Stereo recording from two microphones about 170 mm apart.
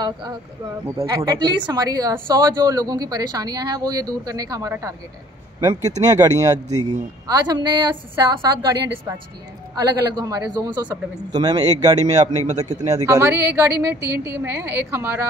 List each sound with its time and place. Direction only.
0.0 s a woman's voice: 25° right (ahead or behind)